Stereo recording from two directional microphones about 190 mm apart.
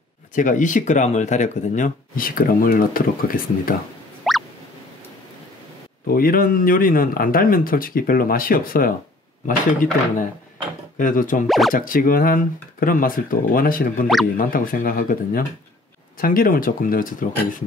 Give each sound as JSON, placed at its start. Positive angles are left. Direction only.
{"t": 0.4, "sound": "speech", "side_deg": 40}
{"t": 4.2, "sound": "music", "side_deg": 0}
{"t": 6.0, "sound": "speech", "side_deg": 50}
{"t": 11.0, "sound": "speech", "side_deg": 45}
{"t": 11.4, "sound": "speech", "side_deg": 0}
{"t": 11.7, "sound": "speech", "side_deg": 45}